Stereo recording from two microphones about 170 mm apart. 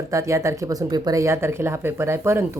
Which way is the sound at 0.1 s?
15° right (ahead or behind).